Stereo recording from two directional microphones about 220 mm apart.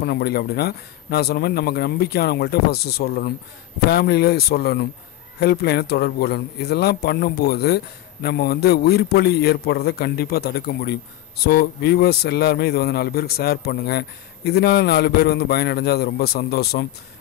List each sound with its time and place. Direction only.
0.0 s a man's voice: 45° left (ahead or behind)